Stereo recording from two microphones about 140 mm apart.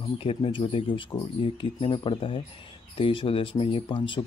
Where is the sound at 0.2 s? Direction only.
40° left (ahead or behind).